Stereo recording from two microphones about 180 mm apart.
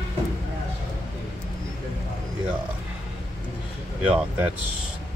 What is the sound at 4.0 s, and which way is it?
Speech, 5° right (ahead or behind).